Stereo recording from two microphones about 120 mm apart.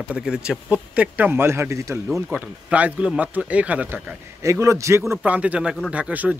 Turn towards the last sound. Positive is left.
turn(degrees=-10)  # may be behind; listen again after turning